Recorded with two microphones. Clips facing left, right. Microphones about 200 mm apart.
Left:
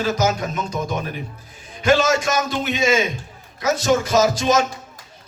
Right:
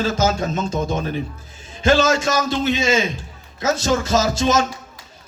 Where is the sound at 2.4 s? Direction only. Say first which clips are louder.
Right 1 dB; 25° right (ahead or behind).